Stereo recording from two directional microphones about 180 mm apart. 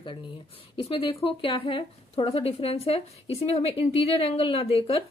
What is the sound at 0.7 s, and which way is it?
A woman's voice, 30° left (ahead or behind).